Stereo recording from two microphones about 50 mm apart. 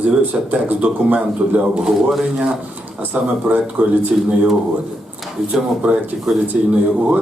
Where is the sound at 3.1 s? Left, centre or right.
Right.